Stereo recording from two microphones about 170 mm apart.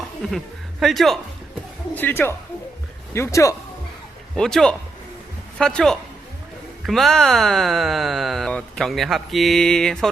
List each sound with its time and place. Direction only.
0.3 s speech: centre (ahead or behind)
2.0 s speech: 10° left (ahead or behind)
4.4 s speech: 5° left (ahead or behind)